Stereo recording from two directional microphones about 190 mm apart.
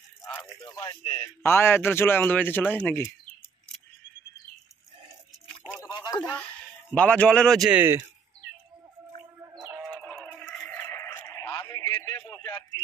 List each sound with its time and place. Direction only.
0.2 s speech: 15° left (ahead or behind)
0.8 s speech: 30° left (ahead or behind)
1.2 s speech: 10° left (ahead or behind)
5.7 s a sound: 20° left (ahead or behind)
6.3 s speech: 5° left (ahead or behind)
9.4 s bird: 10° right (ahead or behind)
9.8 s a sound: 5° left (ahead or behind)